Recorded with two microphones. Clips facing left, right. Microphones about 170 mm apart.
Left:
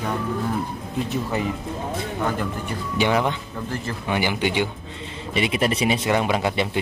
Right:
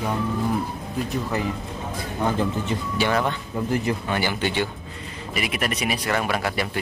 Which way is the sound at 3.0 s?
15° left (ahead or behind).